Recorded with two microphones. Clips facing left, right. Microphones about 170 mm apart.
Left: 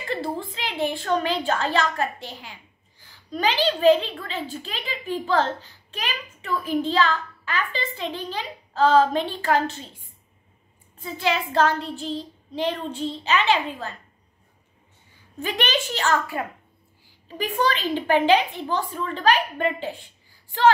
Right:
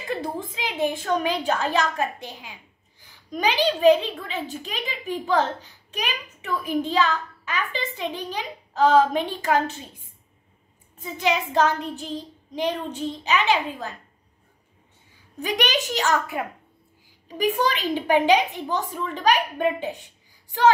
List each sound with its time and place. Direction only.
0.7 s a child's voice: 15° right (ahead or behind)
11.0 s a child's voice: 15° right (ahead or behind)
15.4 s a child's voice: 15° right (ahead or behind)